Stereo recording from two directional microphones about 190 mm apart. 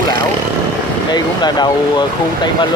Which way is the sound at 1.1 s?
20° left (ahead or behind).